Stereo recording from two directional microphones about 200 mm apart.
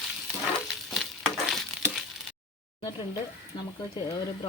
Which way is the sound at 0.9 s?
Centre (ahead or behind).